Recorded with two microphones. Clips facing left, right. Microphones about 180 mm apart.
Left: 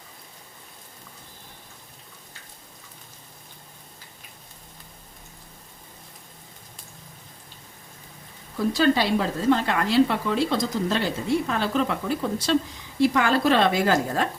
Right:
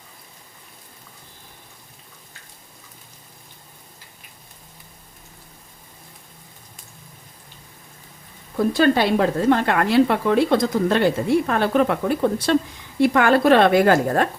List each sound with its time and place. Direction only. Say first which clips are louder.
8.5 s a woman's voice: right 4 dB; 55° right (ahead or behind)